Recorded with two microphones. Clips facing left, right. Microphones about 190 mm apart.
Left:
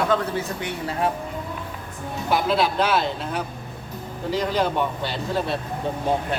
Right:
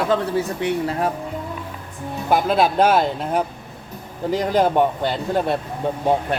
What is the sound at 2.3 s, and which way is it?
A man's voice, 50° right (ahead or behind).